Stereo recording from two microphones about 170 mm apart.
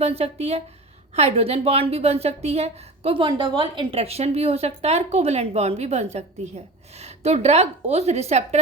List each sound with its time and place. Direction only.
0.0 s a woman's voice: 35° right (ahead or behind)